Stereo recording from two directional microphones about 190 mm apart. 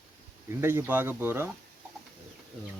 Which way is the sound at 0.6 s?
10° right (ahead or behind).